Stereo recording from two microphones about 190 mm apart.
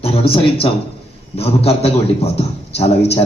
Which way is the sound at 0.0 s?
30° left (ahead or behind).